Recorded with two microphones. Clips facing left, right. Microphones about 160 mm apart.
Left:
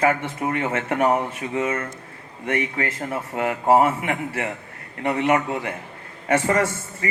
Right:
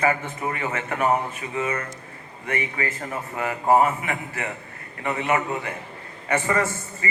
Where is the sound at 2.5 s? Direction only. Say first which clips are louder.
Left 3 dB; 70° left (ahead or behind).